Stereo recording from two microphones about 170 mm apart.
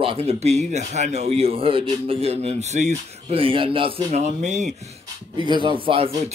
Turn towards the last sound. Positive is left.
turn(degrees=-35)  # may be behind; listen again after turning